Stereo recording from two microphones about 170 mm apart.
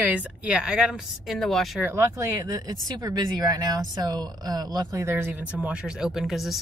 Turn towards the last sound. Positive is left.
turn(degrees=0)  # may be behind; listen again after turning